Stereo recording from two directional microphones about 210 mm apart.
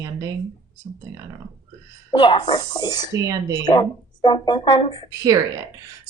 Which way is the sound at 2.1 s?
20° left (ahead or behind).